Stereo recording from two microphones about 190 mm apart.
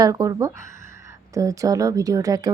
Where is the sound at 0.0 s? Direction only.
20° right (ahead or behind).